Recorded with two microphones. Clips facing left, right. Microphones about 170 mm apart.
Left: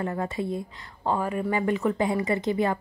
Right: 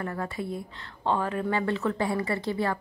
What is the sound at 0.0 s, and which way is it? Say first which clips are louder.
Speech: left 4 dB; 20° left (ahead or behind).